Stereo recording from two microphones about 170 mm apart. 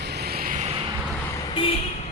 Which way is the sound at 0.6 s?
35° right (ahead or behind).